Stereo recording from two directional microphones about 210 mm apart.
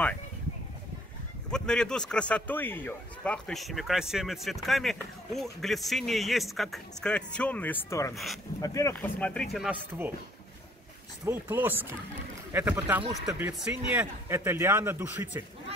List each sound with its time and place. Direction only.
1.5 s a man's voice: 5° left (ahead or behind)
11.2 s speech: 10° right (ahead or behind)
13.0 s speech: 20° right (ahead or behind)